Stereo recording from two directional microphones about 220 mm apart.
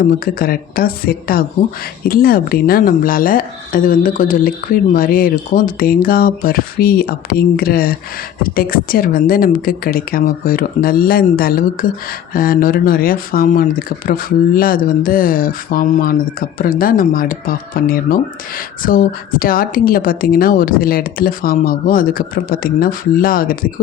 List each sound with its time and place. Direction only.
0.0 s speech: 40° left (ahead or behind)